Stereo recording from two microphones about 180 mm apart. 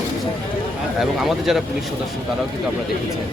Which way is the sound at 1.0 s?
Centre (ahead or behind).